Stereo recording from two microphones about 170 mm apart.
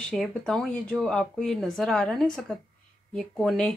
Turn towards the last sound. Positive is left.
turn(degrees=5)  # may be behind; listen again after turning